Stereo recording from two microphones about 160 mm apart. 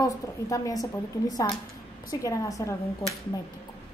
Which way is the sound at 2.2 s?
20° left (ahead or behind).